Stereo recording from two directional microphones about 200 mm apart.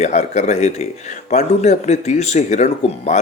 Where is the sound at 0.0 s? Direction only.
35° left (ahead or behind).